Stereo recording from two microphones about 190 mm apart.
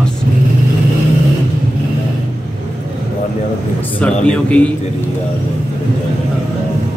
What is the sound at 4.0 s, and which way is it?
Speech, 5° left (ahead or behind).